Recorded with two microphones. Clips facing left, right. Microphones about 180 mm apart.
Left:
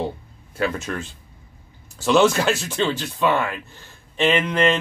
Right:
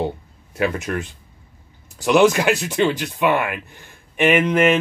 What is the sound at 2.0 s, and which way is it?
Speech, 15° right (ahead or behind).